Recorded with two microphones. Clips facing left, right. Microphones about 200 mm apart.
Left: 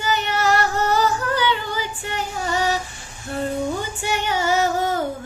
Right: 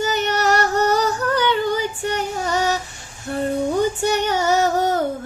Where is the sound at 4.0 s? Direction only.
45° right (ahead or behind).